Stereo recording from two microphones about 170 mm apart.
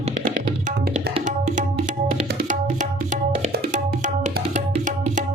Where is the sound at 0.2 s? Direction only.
55° right (ahead or behind).